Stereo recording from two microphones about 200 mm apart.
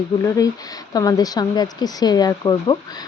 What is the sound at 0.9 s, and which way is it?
Speech, 20° left (ahead or behind).